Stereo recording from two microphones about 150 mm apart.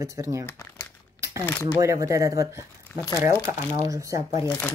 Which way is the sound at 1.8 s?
20° right (ahead or behind).